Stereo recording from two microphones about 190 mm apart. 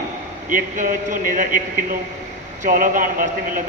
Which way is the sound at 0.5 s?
45° right (ahead or behind).